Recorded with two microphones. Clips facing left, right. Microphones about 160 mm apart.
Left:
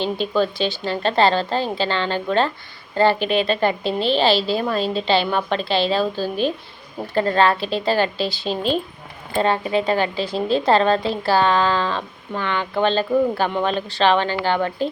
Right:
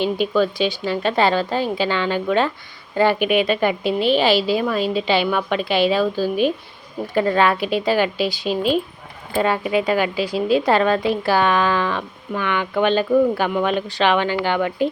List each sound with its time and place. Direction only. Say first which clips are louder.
0.0 s a woman's voice: right 2 dB; 10° right (ahead or behind)